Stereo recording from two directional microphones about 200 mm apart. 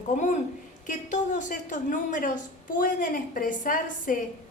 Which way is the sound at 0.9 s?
40° left (ahead or behind).